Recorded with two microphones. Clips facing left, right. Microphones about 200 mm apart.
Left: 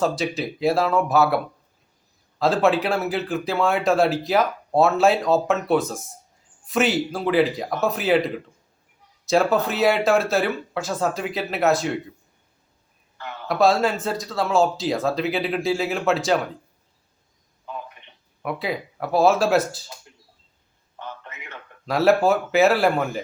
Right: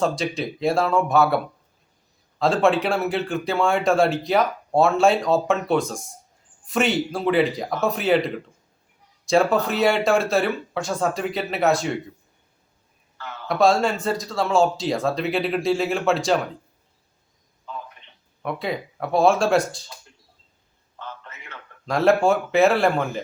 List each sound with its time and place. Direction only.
0.0 s speech: centre (ahead or behind)
2.4 s speech: centre (ahead or behind)
13.5 s speech: centre (ahead or behind)
17.7 s a sound: 15° left (ahead or behind)
18.4 s speech: centre (ahead or behind)
21.0 s a sound: 15° left (ahead or behind)
21.8 s speech: 5° left (ahead or behind)